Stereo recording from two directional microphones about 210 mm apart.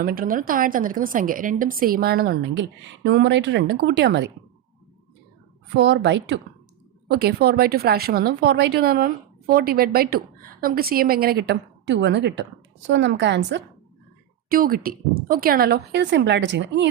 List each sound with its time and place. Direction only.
0.0 s a woman's voice: 40° right (ahead or behind)
5.7 s a woman's voice: 55° right (ahead or behind)
14.5 s a woman's voice: 45° right (ahead or behind)